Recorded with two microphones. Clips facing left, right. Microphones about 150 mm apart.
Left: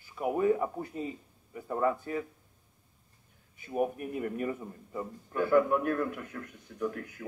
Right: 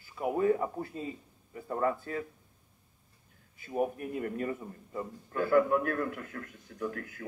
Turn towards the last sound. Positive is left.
turn(degrees=20)  # may be behind; listen again after turning